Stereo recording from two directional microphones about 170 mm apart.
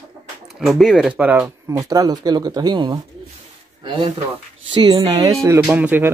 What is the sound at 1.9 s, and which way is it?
Speech, 20° right (ahead or behind).